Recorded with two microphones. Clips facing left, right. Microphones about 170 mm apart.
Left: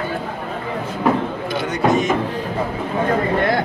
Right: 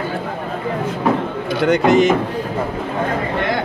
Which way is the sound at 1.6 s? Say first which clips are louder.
Right 5 dB; 70° right (ahead or behind).